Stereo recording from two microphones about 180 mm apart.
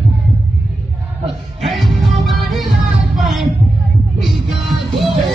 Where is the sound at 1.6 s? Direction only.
Centre (ahead or behind).